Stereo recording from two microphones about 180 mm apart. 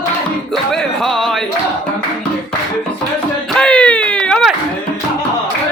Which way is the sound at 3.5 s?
5° left (ahead or behind).